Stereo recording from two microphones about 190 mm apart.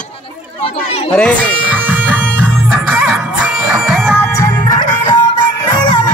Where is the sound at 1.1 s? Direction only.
5° left (ahead or behind).